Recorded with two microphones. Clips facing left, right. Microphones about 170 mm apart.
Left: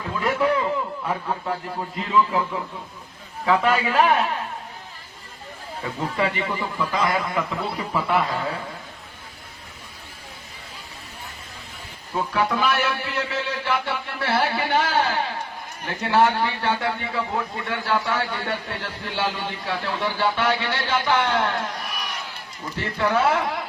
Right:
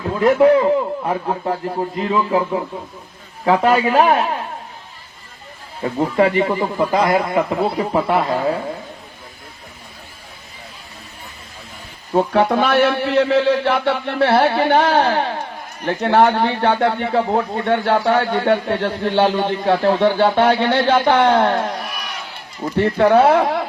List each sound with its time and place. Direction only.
0.1 s a man's voice: 40° right (ahead or behind)
5.8 s speech: 45° right (ahead or behind)
12.1 s speech: 60° right (ahead or behind)
22.8 s speech: 60° right (ahead or behind)